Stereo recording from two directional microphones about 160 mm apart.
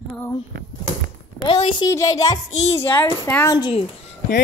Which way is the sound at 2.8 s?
15° left (ahead or behind).